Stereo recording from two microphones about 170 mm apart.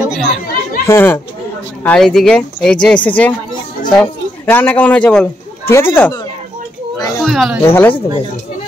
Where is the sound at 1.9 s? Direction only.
5° left (ahead or behind).